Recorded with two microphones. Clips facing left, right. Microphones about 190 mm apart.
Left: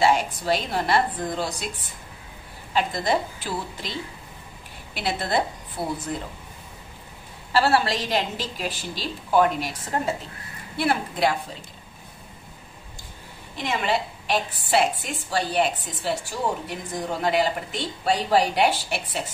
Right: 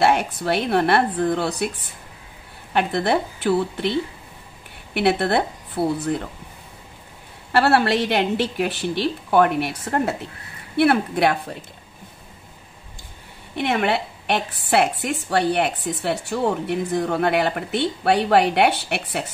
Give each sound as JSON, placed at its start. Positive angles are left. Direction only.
{"t": 0.0, "sound": "a woman's voice", "side_deg": -60}
{"t": 7.5, "sound": "a woman's voice", "side_deg": -60}
{"t": 13.6, "sound": "a woman's voice", "side_deg": -60}